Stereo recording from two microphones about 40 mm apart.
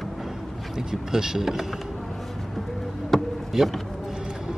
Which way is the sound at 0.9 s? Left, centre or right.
Centre.